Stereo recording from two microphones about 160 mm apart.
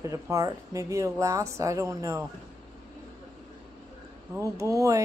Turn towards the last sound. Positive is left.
turn(degrees=-20)  # may be behind; listen again after turning